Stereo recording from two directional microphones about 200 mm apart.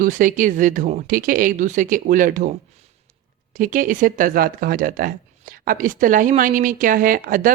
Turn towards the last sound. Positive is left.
turn(degrees=-45)  # may be behind; listen again after turning